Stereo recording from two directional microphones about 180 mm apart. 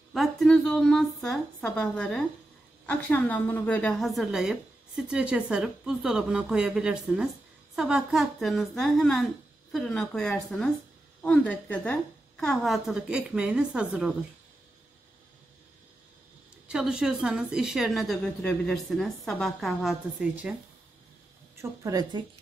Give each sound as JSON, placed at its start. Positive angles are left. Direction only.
{"t": 0.1, "sound": "a woman's voice", "side_deg": 0}
{"t": 16.6, "sound": "a woman's voice", "side_deg": -5}
{"t": 21.5, "sound": "a woman's voice", "side_deg": -20}